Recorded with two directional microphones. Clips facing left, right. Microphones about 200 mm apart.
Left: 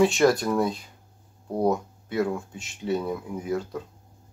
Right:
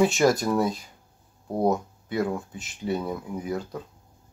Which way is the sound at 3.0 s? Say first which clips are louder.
Left 1 dB; centre (ahead or behind).